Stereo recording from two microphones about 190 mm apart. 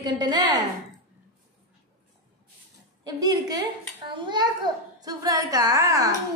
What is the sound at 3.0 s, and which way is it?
A woman's voice, 20° right (ahead or behind).